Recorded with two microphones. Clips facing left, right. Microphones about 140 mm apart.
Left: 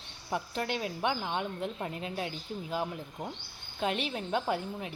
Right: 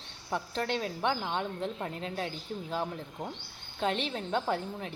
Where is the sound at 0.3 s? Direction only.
10° left (ahead or behind).